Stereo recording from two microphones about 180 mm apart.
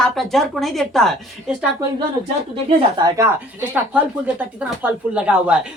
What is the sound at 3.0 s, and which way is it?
Speech, 15° right (ahead or behind).